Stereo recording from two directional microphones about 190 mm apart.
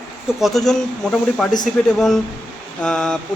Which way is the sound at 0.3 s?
Centre (ahead or behind).